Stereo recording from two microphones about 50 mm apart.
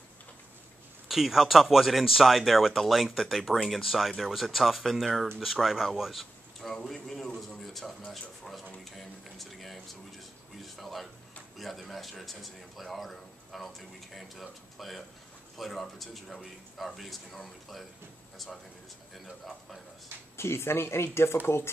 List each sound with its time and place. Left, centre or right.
1.0 s a man's voice: centre
6.9 s a man's voice: centre
19.1 s a man's voice: centre
20.3 s speech: left